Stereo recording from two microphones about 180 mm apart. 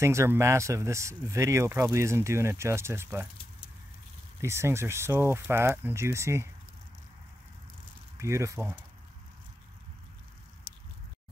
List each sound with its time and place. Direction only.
0.0 s speech: 15° right (ahead or behind)
4.4 s speech: 15° right (ahead or behind)
8.2 s speech: 15° right (ahead or behind)
10.7 s squish: 25° left (ahead or behind)